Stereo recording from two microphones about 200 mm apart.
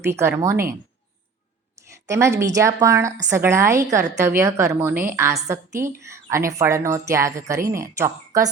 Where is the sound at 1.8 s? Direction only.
15° right (ahead or behind).